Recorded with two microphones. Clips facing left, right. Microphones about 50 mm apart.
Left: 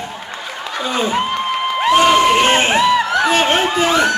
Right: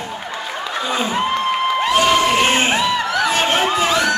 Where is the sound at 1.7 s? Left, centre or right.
Centre.